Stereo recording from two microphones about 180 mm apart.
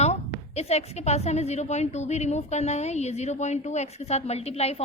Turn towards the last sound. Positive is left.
turn(degrees=35)  # may be behind; listen again after turning